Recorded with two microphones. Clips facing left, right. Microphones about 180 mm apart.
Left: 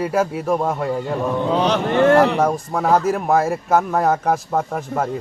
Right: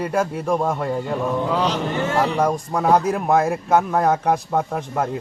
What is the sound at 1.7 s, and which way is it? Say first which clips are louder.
Speech: left 8 dB; 60° left (ahead or behind).